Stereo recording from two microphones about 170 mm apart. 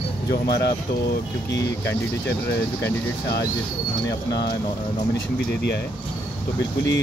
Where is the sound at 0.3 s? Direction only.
70° left (ahead or behind).